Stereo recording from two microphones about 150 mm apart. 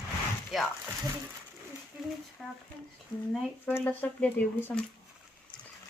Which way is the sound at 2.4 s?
Centre (ahead or behind).